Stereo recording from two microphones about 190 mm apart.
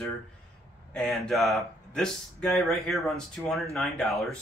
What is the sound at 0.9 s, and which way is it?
Speech, centre (ahead or behind).